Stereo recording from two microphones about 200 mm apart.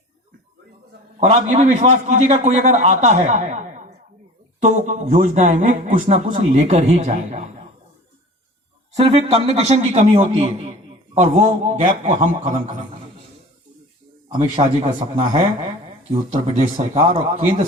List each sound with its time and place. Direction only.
1.2 s a man's voice: 35° right (ahead or behind)
9.0 s a man's voice: 30° right (ahead or behind)
14.3 s a man's voice: 30° right (ahead or behind)